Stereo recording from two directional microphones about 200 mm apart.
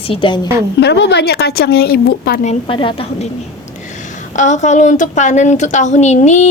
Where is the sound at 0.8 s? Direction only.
55° left (ahead or behind).